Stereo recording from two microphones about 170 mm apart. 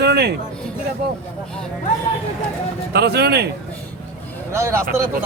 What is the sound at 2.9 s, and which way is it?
Speech, 70° right (ahead or behind).